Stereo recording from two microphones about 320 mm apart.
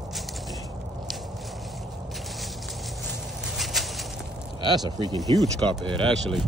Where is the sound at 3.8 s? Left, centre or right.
Centre.